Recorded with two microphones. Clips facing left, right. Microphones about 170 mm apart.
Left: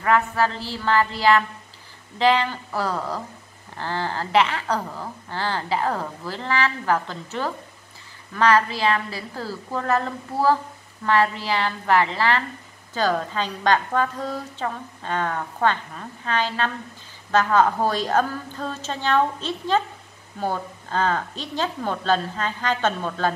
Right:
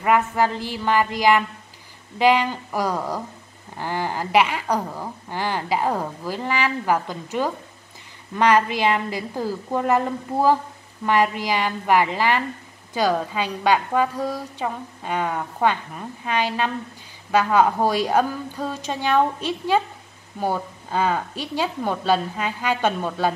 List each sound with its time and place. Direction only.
0.0 s a woman's voice: 15° right (ahead or behind)